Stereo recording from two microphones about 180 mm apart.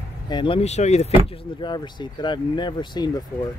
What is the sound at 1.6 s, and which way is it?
Speech, 25° left (ahead or behind).